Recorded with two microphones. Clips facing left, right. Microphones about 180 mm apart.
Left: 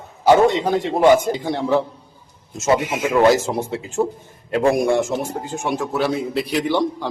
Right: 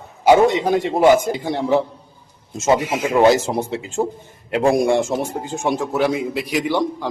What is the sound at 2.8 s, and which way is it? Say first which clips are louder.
A man's voice: right 1 dB; 30° right (ahead or behind).